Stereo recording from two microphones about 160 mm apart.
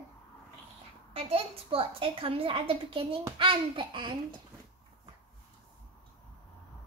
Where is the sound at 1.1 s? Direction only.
35° right (ahead or behind).